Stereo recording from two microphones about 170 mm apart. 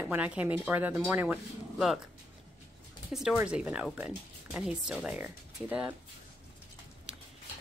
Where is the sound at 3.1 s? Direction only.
5° right (ahead or behind).